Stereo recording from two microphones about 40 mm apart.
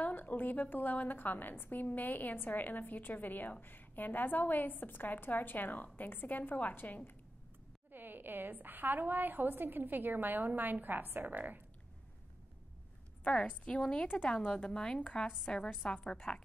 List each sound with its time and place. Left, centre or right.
0.0 s a woman's voice: left
7.9 s a woman's voice: right
13.5 s a woman's voice: left